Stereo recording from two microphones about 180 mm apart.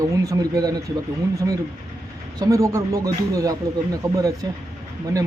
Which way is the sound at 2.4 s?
20° right (ahead or behind).